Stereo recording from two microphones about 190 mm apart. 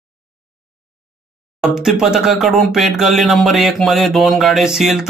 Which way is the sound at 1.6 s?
5° right (ahead or behind).